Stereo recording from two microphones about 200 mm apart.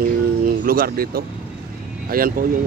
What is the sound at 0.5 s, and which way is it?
Speech, 45° right (ahead or behind).